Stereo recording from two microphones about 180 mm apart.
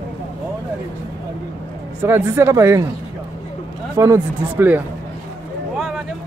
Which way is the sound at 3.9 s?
15° right (ahead or behind).